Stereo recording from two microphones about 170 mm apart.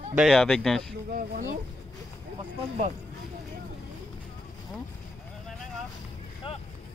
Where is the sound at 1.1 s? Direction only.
60° right (ahead or behind).